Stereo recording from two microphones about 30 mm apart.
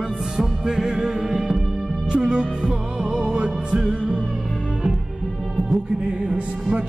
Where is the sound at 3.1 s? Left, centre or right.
Right.